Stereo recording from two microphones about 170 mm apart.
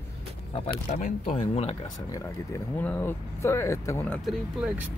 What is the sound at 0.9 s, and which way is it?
Speech, 45° left (ahead or behind).